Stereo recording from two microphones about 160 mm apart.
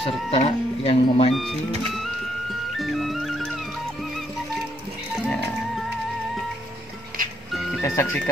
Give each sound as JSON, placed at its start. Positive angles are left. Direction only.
{"t": 0.0, "sound": "speech", "side_deg": 40}
{"t": 1.3, "sound": "music", "side_deg": 0}
{"t": 2.8, "sound": "music", "side_deg": 0}
{"t": 5.2, "sound": "music", "side_deg": 5}
{"t": 7.8, "sound": "speech", "side_deg": 15}